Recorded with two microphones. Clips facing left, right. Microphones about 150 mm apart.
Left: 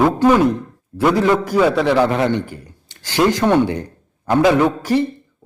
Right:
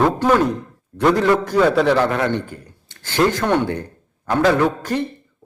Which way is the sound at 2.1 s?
20° left (ahead or behind).